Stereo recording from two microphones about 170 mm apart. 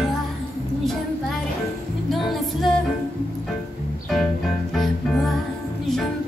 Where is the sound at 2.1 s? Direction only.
Centre (ahead or behind).